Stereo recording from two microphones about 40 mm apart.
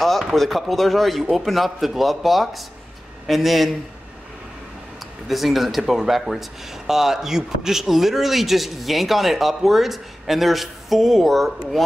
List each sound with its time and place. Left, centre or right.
0.0 s a man's voice: centre
5.3 s a man's voice: centre